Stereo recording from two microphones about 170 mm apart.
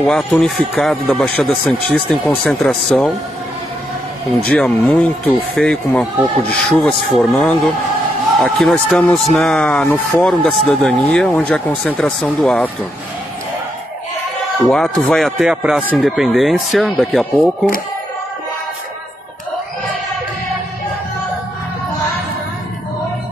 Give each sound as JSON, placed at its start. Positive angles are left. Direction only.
{"t": 0.0, "sound": "speech", "side_deg": 5}
{"t": 4.3, "sound": "speech", "side_deg": 5}
{"t": 14.7, "sound": "speech", "side_deg": 5}